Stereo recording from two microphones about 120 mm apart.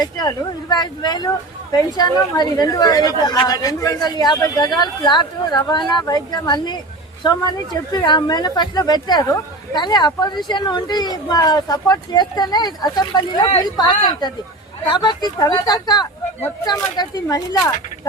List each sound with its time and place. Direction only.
0.0 s speech: 35° left (ahead or behind)